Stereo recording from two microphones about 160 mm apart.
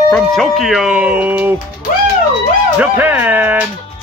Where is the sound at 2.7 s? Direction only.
10° right (ahead or behind).